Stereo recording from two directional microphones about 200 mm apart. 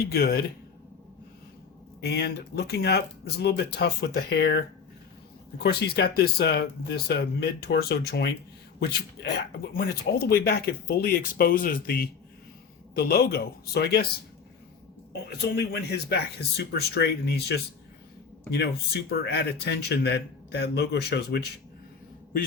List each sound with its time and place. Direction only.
0.1 s speech: 50° left (ahead or behind)
2.0 s speech: 55° left (ahead or behind)
15.1 s speech: 55° left (ahead or behind)